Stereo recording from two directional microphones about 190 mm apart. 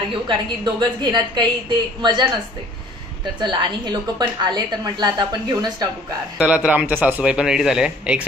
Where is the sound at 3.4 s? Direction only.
25° right (ahead or behind).